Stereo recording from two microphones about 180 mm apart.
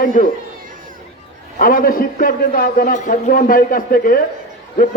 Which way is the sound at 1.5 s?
50° left (ahead or behind).